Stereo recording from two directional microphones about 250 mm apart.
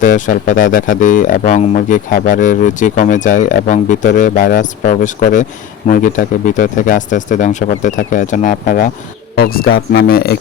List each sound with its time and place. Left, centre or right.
0.0 s speech: left